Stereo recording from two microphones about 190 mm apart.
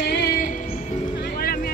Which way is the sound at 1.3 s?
50° left (ahead or behind).